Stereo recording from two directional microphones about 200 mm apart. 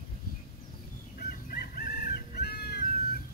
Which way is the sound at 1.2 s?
50° left (ahead or behind).